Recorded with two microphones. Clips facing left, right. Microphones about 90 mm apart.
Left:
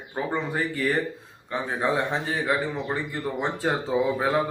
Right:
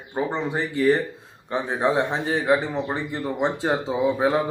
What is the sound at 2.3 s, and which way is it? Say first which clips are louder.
Speech: right 4 dB; 25° right (ahead or behind).